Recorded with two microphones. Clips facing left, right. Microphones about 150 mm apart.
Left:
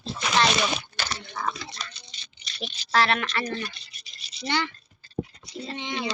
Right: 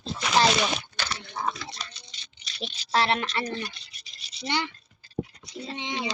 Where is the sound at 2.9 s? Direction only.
25° right (ahead or behind).